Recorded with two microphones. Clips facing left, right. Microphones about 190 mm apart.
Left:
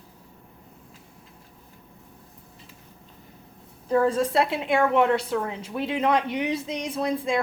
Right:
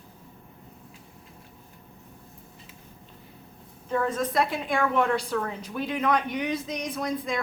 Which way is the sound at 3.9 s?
35° left (ahead or behind).